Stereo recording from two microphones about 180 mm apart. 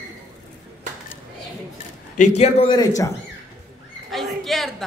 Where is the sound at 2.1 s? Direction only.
35° left (ahead or behind).